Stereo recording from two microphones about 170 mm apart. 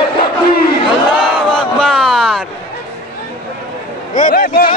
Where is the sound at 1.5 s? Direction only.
Centre (ahead or behind).